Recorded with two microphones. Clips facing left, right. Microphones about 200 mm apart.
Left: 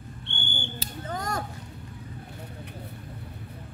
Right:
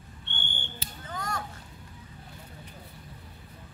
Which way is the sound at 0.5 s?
35° left (ahead or behind).